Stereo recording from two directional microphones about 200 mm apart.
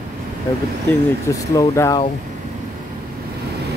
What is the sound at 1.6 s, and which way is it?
Speech, 15° left (ahead or behind).